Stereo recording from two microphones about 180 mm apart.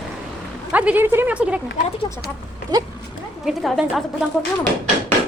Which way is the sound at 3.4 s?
Centre (ahead or behind).